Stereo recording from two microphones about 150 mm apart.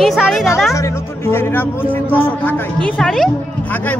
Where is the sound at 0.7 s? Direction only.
15° left (ahead or behind).